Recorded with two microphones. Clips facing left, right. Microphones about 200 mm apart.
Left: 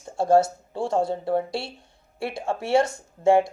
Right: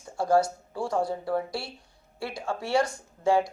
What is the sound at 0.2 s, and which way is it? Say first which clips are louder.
Speech: left 4 dB; 25° left (ahead or behind).